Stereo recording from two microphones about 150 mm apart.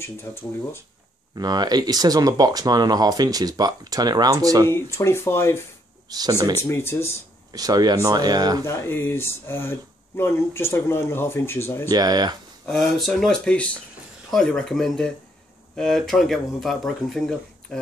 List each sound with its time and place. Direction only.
0.0 s speech: 15° left (ahead or behind)
1.3 s speech: 25° right (ahead or behind)
4.6 s speech: 20° left (ahead or behind)
6.0 s speech: 25° right (ahead or behind)
6.5 s speech: 15° left (ahead or behind)
7.5 s speech: 25° right (ahead or behind)
8.6 s speech: 15° left (ahead or behind)
11.9 s speech: 25° right (ahead or behind)
12.6 s speech: 5° left (ahead or behind)